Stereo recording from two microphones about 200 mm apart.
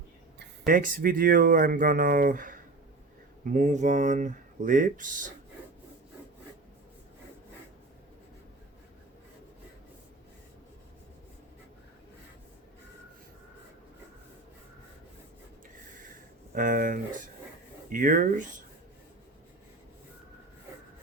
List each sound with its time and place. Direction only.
0.3 s speech: 45° right (ahead or behind)
16.6 s speech: 45° right (ahead or behind)